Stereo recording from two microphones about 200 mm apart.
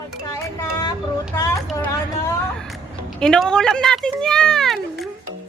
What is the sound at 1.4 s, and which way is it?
Vehicle, 15° left (ahead or behind).